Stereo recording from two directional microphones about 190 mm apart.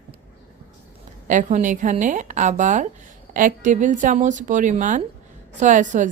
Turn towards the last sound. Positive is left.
turn(degrees=-40)  # may be behind; listen again after turning